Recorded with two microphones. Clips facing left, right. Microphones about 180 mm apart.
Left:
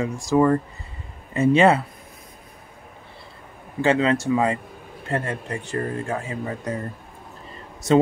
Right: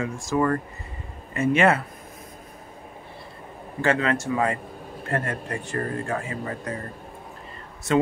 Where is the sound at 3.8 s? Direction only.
25° left (ahead or behind).